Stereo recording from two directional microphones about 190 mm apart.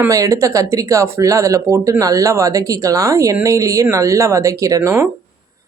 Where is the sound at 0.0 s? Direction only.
15° right (ahead or behind).